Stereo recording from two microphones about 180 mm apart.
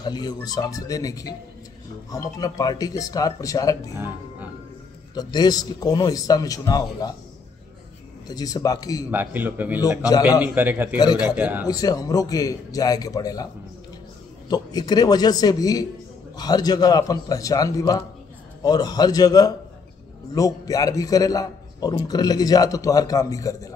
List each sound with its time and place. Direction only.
0.0 s a man's voice: 25° left (ahead or behind)
3.9 s speech: 10° right (ahead or behind)
5.1 s a man's voice: 20° left (ahead or behind)
8.3 s a man's voice: 20° left (ahead or behind)
9.1 s speech: 10° right (ahead or behind)
11.6 s a man's voice: 20° left (ahead or behind)
14.5 s a man's voice: 20° left (ahead or behind)